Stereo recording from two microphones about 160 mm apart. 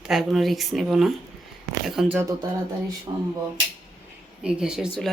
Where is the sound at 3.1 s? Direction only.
30° right (ahead or behind).